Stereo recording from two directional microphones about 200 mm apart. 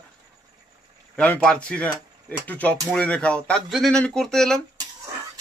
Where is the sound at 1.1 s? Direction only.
5° left (ahead or behind).